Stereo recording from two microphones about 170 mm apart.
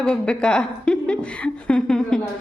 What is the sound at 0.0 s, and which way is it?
A woman's voice, 5° left (ahead or behind).